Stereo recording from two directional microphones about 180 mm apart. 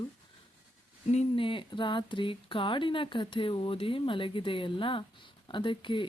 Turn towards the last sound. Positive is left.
turn(degrees=25)  # may be behind; listen again after turning